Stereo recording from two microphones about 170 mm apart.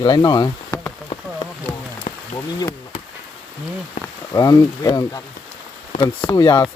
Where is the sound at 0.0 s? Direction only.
25° left (ahead or behind).